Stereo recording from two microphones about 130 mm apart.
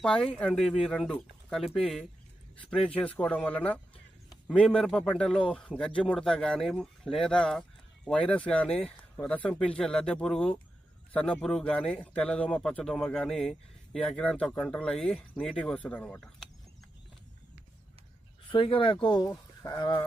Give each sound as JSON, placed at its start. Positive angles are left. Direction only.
{"t": 0.0, "sound": "a man's voice", "side_deg": 5}
{"t": 18.5, "sound": "speech", "side_deg": 40}